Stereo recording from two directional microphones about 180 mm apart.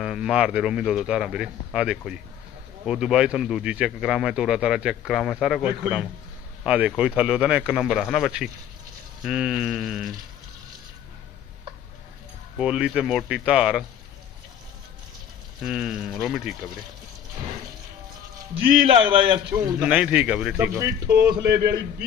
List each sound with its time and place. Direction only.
0.0 s speech: centre (ahead or behind)
12.5 s speech: 5° right (ahead or behind)
15.6 s speech: 5° right (ahead or behind)
18.9 s a man's voice: 30° right (ahead or behind)
19.8 s speech: 5° right (ahead or behind)
20.7 s a man's voice: 15° right (ahead or behind)